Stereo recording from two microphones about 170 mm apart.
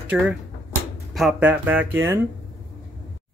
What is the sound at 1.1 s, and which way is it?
Speech, 5° right (ahead or behind).